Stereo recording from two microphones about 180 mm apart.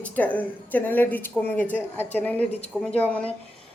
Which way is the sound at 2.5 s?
35° left (ahead or behind).